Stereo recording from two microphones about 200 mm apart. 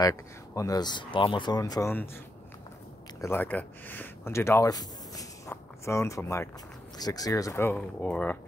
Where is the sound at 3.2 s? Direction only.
10° left (ahead or behind).